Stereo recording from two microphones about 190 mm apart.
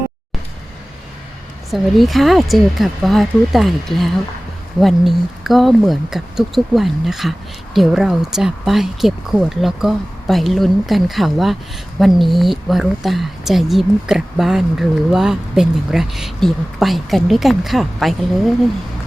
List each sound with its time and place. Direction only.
1.7 s speech: centre (ahead or behind)